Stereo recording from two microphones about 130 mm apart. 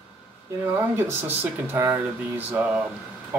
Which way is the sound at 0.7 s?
15° right (ahead or behind).